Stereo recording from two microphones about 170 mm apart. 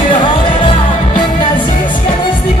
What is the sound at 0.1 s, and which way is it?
Music, 30° left (ahead or behind).